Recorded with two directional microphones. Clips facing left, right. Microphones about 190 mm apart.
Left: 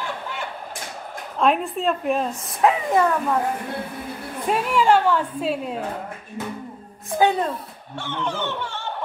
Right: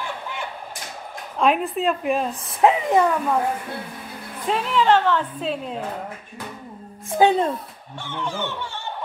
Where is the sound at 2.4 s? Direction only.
20° right (ahead or behind).